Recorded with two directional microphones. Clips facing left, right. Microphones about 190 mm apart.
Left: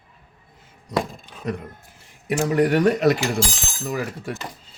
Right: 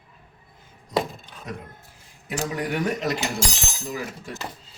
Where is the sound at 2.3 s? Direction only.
65° left (ahead or behind).